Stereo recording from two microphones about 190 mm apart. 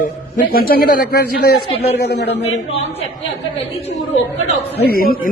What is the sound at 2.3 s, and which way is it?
Speech, 35° left (ahead or behind).